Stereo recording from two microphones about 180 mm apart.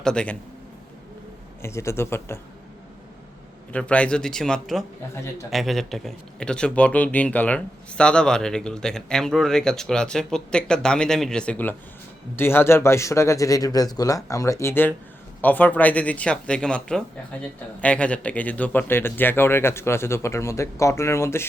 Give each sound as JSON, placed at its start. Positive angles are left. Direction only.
{"t": 0.0, "sound": "speech", "side_deg": 5}
{"t": 1.6, "sound": "speech", "side_deg": 15}
{"t": 3.7, "sound": "speech", "side_deg": 5}